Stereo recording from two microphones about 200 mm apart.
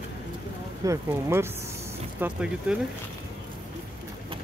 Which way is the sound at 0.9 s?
15° right (ahead or behind).